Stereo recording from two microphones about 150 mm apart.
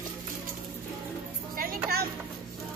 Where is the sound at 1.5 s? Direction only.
75° right (ahead or behind).